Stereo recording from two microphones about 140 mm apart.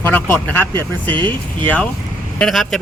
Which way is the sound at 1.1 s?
35° right (ahead or behind).